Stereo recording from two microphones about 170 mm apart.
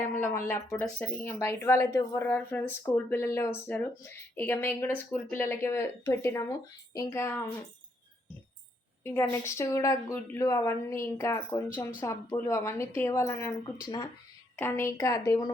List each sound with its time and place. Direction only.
0.0 s a woman's voice: 10° left (ahead or behind)
9.1 s a woman's voice: 15° left (ahead or behind)
14.5 s a woman's voice: 15° left (ahead or behind)